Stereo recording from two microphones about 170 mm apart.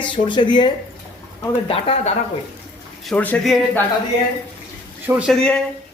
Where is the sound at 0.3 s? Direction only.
25° left (ahead or behind).